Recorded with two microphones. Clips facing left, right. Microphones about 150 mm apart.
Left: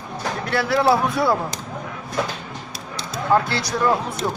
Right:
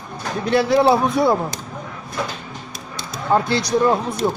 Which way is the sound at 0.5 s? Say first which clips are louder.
Right 4 dB; 20° right (ahead or behind).